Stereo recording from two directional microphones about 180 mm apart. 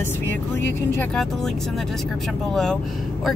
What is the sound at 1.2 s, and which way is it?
Speech, centre (ahead or behind).